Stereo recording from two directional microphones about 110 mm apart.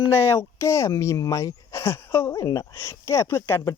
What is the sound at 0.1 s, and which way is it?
Speech, 25° left (ahead or behind).